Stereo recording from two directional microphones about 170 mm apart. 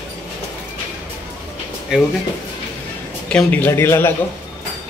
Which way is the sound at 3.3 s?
5° left (ahead or behind).